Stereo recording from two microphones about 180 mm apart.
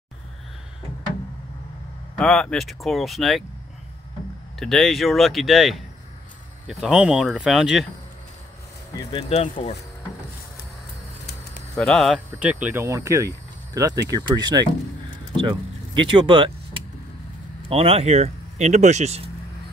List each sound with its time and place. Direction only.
2.1 s speech: 5° left (ahead or behind)
4.6 s speech: centre (ahead or behind)
9.3 s speech: 35° left (ahead or behind)
11.7 s speech: centre (ahead or behind); by 16.5 s 30° right (ahead or behind)
17.6 s speech: 30° right (ahead or behind)